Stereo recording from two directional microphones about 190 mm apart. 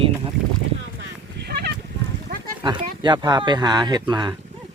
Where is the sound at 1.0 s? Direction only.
60° right (ahead or behind).